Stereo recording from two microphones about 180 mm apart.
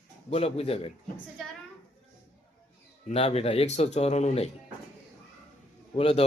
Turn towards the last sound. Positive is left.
turn(degrees=35)  # may be behind; listen again after turning